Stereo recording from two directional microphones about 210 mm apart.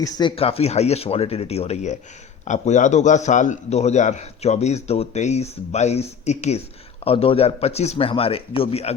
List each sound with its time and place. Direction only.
0.0 s a man's voice: 20° left (ahead or behind)